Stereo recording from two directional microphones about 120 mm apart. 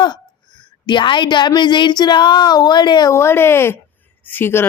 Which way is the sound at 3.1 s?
20° left (ahead or behind).